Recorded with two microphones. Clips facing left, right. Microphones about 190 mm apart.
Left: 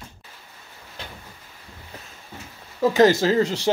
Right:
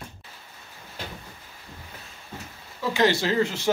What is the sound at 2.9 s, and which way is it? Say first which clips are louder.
Speech: left 5 dB; 40° left (ahead or behind).